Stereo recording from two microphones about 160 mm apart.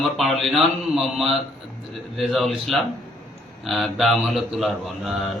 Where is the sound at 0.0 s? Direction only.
Centre (ahead or behind).